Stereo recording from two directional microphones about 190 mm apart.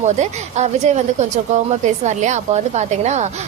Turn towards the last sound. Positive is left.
turn(degrees=-35)  # may be behind; listen again after turning